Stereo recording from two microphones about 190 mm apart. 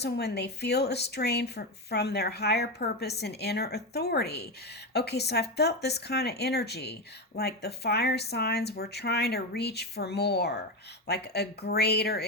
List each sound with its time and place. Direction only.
0.0 s speech: 60° left (ahead or behind)